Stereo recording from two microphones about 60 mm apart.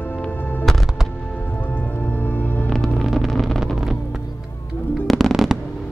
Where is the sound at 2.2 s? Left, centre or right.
Left.